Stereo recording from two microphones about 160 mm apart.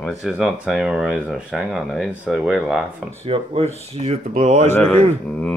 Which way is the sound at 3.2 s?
40° right (ahead or behind).